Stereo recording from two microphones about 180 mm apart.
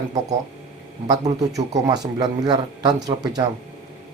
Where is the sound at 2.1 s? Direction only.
25° right (ahead or behind).